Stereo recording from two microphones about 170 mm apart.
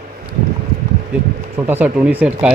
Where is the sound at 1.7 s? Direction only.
10° right (ahead or behind).